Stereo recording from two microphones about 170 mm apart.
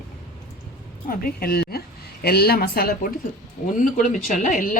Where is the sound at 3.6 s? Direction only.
45° left (ahead or behind).